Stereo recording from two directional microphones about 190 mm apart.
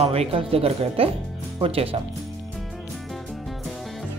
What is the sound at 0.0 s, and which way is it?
Speech, 30° right (ahead or behind).